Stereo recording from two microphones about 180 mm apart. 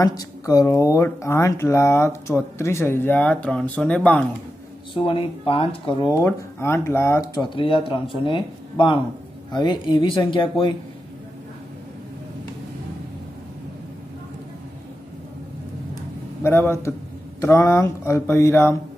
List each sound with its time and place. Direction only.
0.0 s speech: 20° left (ahead or behind)
4.9 s speech: 30° left (ahead or behind)
7.5 s speech: 30° left (ahead or behind)
16.4 s speech: 15° left (ahead or behind)